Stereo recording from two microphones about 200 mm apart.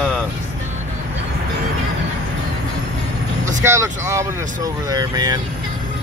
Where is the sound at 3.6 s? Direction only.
15° right (ahead or behind).